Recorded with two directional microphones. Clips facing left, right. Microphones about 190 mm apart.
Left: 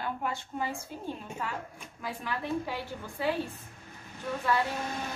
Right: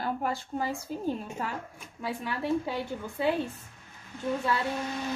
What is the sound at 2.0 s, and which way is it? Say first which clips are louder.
Speech: right 3 dB; 25° right (ahead or behind).